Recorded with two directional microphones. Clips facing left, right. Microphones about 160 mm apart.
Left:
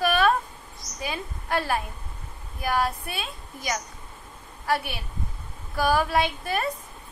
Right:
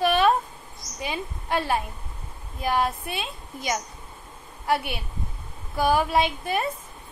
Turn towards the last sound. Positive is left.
turn(degrees=-20)  # may be behind; listen again after turning